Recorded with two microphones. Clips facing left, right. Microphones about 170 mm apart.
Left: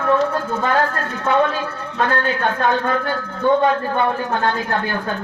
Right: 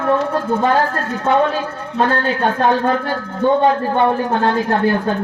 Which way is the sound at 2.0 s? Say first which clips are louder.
Right 3 dB; 30° right (ahead or behind).